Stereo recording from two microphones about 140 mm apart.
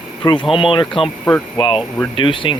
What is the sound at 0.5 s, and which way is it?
Speech, 35° left (ahead or behind).